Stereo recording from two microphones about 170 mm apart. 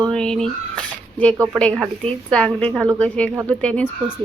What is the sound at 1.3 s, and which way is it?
Speech, 15° right (ahead or behind).